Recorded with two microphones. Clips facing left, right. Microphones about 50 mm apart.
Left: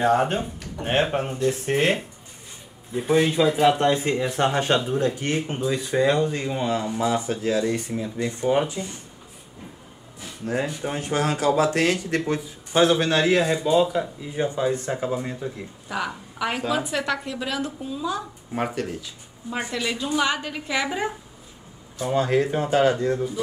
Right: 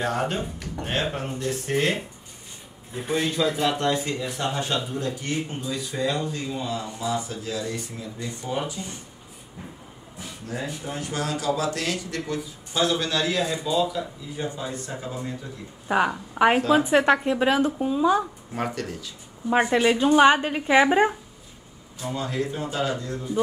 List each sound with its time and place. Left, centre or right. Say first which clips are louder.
0.0 s speech: left 5 dB; left
2.9 s speech: left 6 dB; centre
3.2 s speech: left 4 dB; left
10.5 s speech: left 5 dB; left
15.9 s speech: right 7 dB; right
18.5 s speech: left 5 dB; centre
19.5 s a woman's voice: right 8 dB; right
22.1 s speech: left 7 dB; left